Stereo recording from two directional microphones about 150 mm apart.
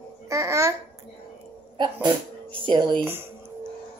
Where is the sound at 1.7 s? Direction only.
30° right (ahead or behind).